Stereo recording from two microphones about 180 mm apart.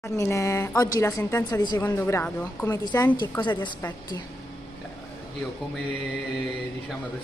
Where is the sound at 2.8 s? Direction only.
20° left (ahead or behind).